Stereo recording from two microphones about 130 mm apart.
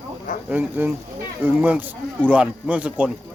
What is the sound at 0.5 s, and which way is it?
Speech, 15° right (ahead or behind).